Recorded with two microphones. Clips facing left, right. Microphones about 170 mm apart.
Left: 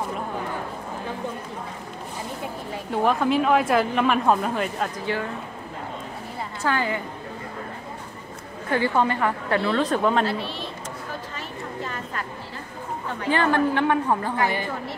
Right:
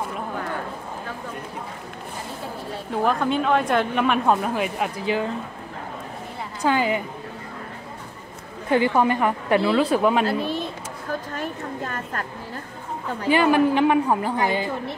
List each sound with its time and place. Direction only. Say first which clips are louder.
2.9 s speech: left 1 dB; centre (ahead or behind)
6.6 s a woman's voice: right 4 dB; 15° right (ahead or behind)
8.6 s a woman's voice: right 3 dB; 15° right (ahead or behind)
10.2 s a woman's voice: right 4 dB; 45° right (ahead or behind)
13.3 s a woman's voice: right 3 dB; 10° right (ahead or behind)